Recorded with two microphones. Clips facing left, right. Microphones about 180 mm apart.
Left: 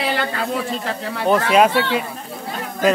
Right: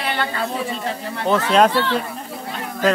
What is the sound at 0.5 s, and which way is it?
Speech, 90° left.